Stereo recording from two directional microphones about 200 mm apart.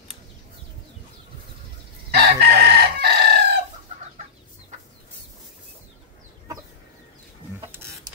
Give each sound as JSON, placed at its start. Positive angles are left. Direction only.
{"t": 2.0, "sound": "chicken", "side_deg": -50}